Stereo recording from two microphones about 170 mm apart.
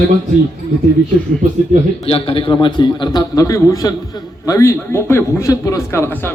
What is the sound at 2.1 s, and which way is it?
A man's voice, 35° left (ahead or behind).